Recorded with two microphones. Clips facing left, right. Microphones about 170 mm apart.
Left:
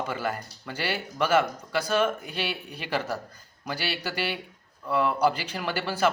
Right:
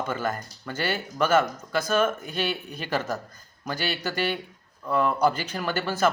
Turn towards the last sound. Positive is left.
turn(degrees=10)  # may be behind; listen again after turning